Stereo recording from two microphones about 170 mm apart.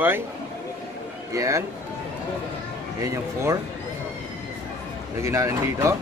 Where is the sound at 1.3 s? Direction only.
20° right (ahead or behind).